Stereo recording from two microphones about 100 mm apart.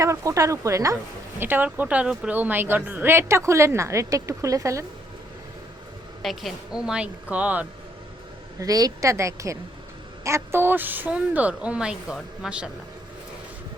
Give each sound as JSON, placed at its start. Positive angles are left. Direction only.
{"t": 0.0, "sound": "speech", "side_deg": -30}
{"t": 1.4, "sound": "speech", "side_deg": -20}
{"t": 6.2, "sound": "speech", "side_deg": -5}
{"t": 8.5, "sound": "speech", "side_deg": -35}